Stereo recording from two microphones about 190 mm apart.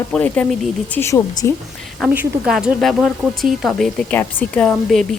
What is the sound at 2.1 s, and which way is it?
Speech, 5° right (ahead or behind).